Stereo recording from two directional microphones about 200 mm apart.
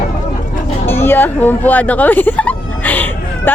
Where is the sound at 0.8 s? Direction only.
10° left (ahead or behind).